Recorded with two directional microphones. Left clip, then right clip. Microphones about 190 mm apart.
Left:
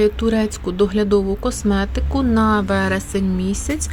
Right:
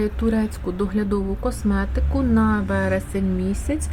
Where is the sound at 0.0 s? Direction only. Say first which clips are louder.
Left 6 dB; 15° left (ahead or behind).